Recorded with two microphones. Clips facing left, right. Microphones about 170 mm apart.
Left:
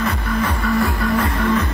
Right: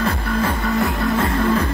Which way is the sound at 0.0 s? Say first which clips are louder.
Right 1 dB; 30° right (ahead or behind).